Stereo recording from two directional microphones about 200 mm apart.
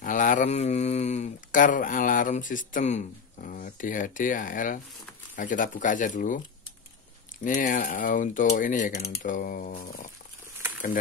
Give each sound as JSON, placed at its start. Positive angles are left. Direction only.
{"t": 0.0, "sound": "speech", "side_deg": 40}
{"t": 7.4, "sound": "speech", "side_deg": 40}